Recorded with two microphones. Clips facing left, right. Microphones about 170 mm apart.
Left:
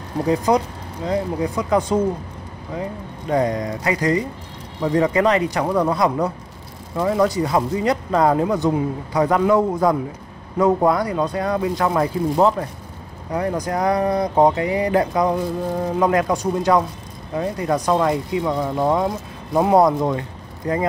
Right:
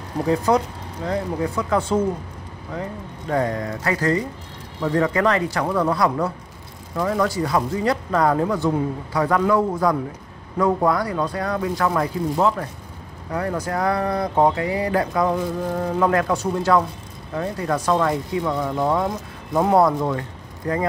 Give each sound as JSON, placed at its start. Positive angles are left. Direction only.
{"t": 0.3, "sound": "speech", "side_deg": 15}